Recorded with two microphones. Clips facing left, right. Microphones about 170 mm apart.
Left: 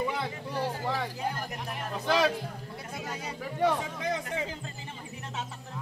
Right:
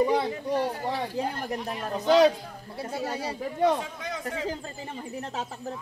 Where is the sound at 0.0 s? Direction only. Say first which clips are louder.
Right 8 dB; 35° right (ahead or behind).